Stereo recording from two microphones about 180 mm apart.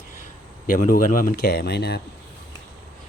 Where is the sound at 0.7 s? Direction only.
50° left (ahead or behind); by 2.0 s 65° left (ahead or behind).